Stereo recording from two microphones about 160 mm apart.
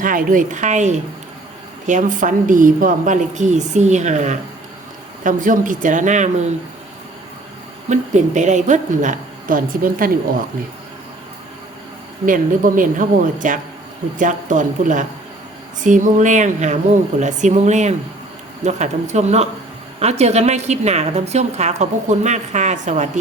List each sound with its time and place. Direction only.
0.0 s a woman's voice: 60° right (ahead or behind)
7.9 s a woman's voice: 50° right (ahead or behind)
12.2 s a woman's voice: 55° right (ahead or behind)